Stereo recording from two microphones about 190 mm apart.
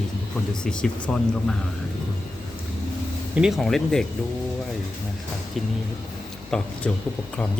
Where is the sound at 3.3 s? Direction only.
Centre (ahead or behind).